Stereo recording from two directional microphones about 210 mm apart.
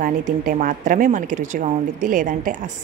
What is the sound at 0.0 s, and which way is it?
A woman's voice, 40° right (ahead or behind).